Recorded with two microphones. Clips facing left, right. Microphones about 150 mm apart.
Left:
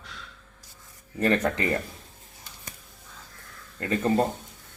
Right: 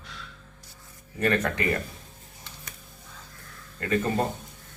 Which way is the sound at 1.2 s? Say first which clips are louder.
Left 2 dB; 30° left (ahead or behind).